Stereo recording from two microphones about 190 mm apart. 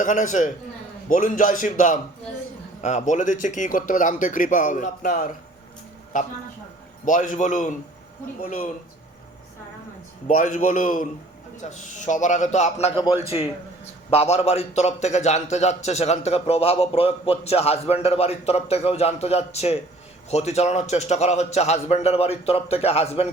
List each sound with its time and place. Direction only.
0.0 s a man's voice: 40° left (ahead or behind)
10.2 s a man's voice: 45° left (ahead or behind)